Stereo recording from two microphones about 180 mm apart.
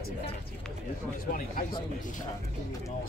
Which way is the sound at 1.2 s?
50° left (ahead or behind).